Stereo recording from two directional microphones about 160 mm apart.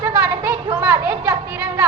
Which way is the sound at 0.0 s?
20° right (ahead or behind).